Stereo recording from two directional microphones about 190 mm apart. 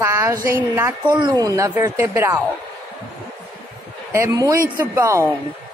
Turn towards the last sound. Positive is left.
turn(degrees=-15)  # may be behind; listen again after turning